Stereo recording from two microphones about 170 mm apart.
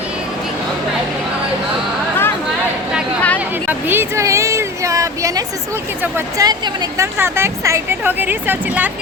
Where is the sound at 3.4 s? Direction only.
10° right (ahead or behind).